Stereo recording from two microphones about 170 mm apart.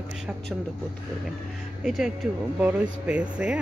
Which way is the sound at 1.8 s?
Centre (ahead or behind).